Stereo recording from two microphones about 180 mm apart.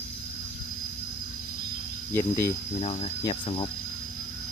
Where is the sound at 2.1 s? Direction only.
15° left (ahead or behind).